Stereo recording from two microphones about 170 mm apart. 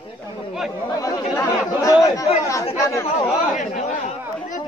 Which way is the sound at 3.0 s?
35° left (ahead or behind).